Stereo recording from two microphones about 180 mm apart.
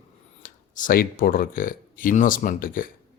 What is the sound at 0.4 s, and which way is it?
Speech, 50° left (ahead or behind).